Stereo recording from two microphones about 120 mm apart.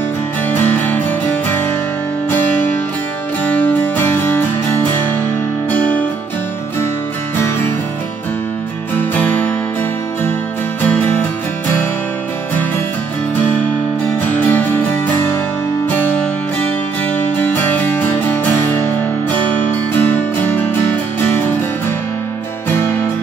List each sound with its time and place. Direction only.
0.5 s music: 15° left (ahead or behind)
2.3 s music: 15° left (ahead or behind)
5.7 s music: 15° left (ahead or behind)
9.1 s music: 15° left (ahead or behind)
14.3 s music: 15° left (ahead or behind)
17.2 s music: 15° left (ahead or behind)
20.0 s music: 15° left (ahead or behind)